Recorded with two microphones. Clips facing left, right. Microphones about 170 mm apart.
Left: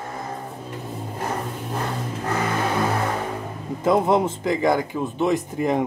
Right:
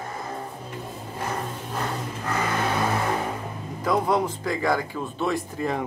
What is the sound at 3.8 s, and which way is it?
Speech, 25° left (ahead or behind).